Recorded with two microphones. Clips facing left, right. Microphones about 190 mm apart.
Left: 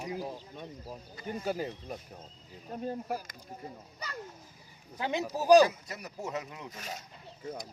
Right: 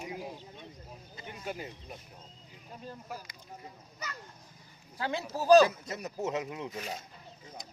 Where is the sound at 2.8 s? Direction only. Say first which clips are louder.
Left 8 dB; 55° left (ahead or behind).